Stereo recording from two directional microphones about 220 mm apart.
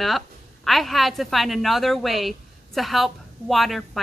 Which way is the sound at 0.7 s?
Centre (ahead or behind).